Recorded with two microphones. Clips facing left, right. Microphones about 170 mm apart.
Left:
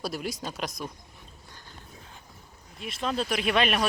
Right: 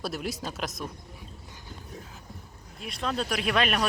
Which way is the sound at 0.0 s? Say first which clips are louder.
Even; centre (ahead or behind).